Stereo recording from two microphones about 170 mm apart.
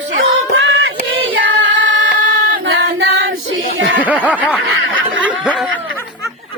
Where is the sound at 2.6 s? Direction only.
90° right.